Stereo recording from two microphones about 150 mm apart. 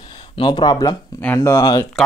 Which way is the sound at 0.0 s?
30° left (ahead or behind).